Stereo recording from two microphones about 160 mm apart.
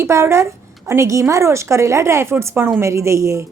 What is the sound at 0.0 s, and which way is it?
A woman's voice, 15° right (ahead or behind).